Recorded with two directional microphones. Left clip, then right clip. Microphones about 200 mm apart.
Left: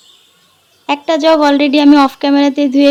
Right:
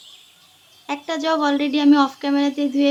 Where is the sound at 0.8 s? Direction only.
40° left (ahead or behind).